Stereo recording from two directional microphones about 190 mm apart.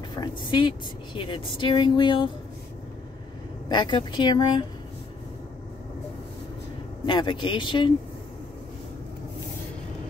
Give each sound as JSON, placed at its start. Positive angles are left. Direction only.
{"t": 0.1, "sound": "speech", "side_deg": 25}
{"t": 3.6, "sound": "speech", "side_deg": 25}
{"t": 7.1, "sound": "speech", "side_deg": 25}